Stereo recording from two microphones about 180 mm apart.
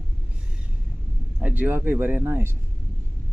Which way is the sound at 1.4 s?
10° right (ahead or behind).